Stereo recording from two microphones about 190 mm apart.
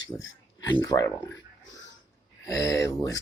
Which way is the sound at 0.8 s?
20° left (ahead or behind).